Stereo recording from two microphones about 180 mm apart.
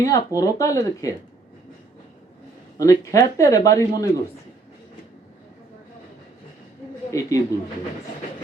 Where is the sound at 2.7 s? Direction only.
20° left (ahead or behind).